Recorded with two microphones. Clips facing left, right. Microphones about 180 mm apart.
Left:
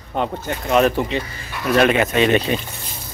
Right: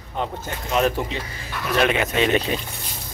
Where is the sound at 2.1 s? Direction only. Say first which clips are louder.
Left 3 dB; 55° left (ahead or behind).